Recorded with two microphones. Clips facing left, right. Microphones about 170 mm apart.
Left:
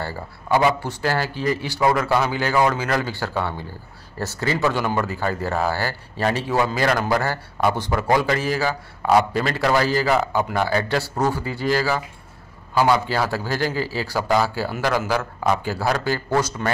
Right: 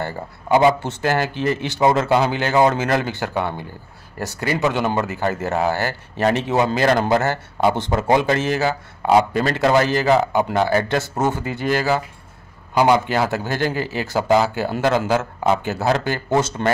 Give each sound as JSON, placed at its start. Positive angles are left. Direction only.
{"t": 0.0, "sound": "speech", "side_deg": -20}